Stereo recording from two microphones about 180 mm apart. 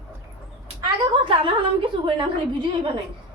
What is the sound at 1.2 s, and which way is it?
A woman's voice, 30° right (ahead or behind).